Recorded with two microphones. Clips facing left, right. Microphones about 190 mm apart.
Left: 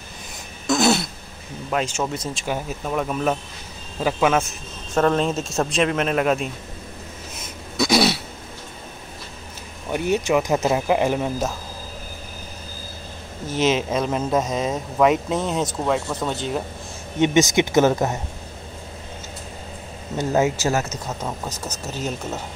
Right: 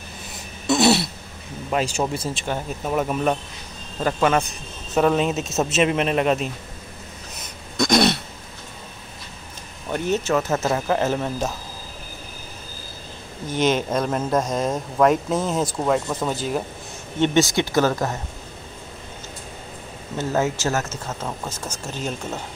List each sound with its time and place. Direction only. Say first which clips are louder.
0.7 s throat clearing: right 1 dB; centre (ahead or behind)
1.7 s speech: right 1 dB; centre (ahead or behind)
2.8 s speech: right 3 dB; 5° right (ahead or behind)
7.3 s throat clearing: even; 5° left (ahead or behind)
9.8 s speech: left 1 dB; 10° left (ahead or behind)
13.5 s speech: even; 5° left (ahead or behind)
17.2 s speech: left 2 dB; 15° left (ahead or behind)
20.2 s speech: left 2 dB; 15° left (ahead or behind)
21.5 s speech: left 1 dB; 10° right (ahead or behind)